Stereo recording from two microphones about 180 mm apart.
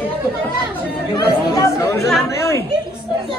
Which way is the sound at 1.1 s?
20° left (ahead or behind).